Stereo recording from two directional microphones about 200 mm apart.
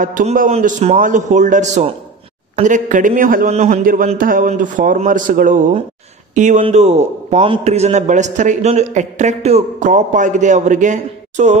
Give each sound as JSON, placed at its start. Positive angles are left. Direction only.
{"t": 0.0, "sound": "a man's voice", "side_deg": -40}